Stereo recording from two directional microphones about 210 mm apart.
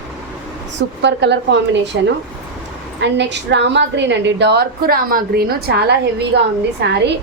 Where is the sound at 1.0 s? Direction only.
55° right (ahead or behind).